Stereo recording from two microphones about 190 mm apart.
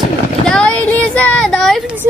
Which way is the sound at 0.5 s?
5° left (ahead or behind).